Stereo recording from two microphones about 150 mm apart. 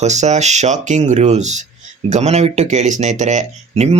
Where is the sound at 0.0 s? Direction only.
50° right (ahead or behind).